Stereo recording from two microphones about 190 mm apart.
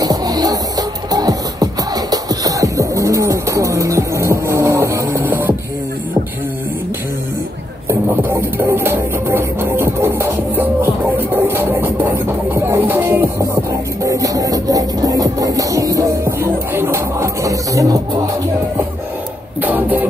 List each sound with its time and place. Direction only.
0.0 s music: 20° right (ahead or behind)
7.9 s music: 15° right (ahead or behind)
19.6 s a sound: 10° right (ahead or behind)